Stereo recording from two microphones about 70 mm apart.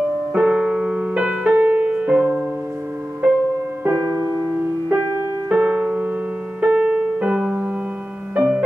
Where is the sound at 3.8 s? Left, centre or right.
Right.